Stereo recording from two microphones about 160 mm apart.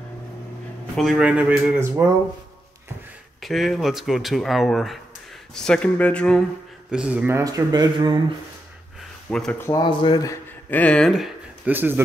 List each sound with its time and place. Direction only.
0.9 s speech: 5° right (ahead or behind)
3.3 s speech: centre (ahead or behind)
6.9 s speech: 5° right (ahead or behind); by 8.2 s 25° right (ahead or behind)
9.3 s speech: 5° left (ahead or behind)
9.6 s speech: 25° left (ahead or behind); by 11.7 s centre (ahead or behind)
11.7 s speech: 10° right (ahead or behind)